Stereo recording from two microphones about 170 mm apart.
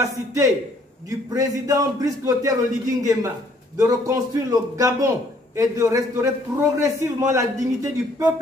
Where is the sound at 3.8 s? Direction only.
20° right (ahead or behind).